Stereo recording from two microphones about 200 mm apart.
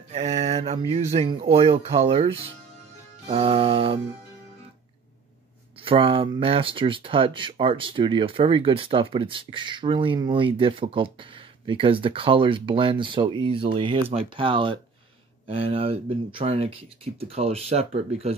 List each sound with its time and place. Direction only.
0.1 s speech: 35° right (ahead or behind)
5.9 s speech: 25° right (ahead or behind)